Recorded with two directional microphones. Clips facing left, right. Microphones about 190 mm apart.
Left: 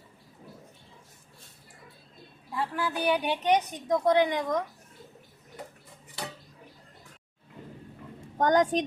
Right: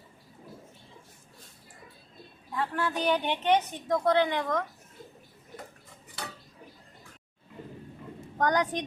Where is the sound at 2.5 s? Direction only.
5° left (ahead or behind).